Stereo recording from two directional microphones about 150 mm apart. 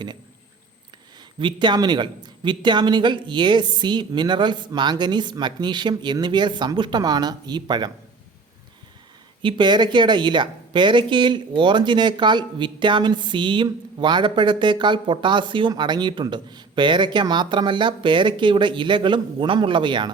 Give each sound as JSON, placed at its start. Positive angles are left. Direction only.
{"t": 1.4, "sound": "speech", "side_deg": -30}
{"t": 9.4, "sound": "speech", "side_deg": -35}